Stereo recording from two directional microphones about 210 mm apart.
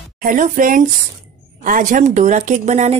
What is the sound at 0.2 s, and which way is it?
A woman's voice, 40° right (ahead or behind).